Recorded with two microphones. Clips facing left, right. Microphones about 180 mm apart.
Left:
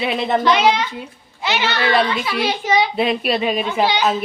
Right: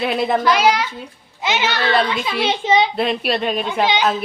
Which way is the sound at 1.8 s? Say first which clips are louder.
Left 2 dB; 10° left (ahead or behind).